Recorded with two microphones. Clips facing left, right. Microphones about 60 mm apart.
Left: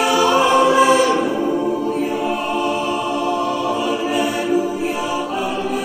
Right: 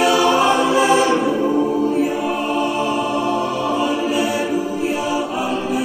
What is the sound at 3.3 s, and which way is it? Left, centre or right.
Music, right.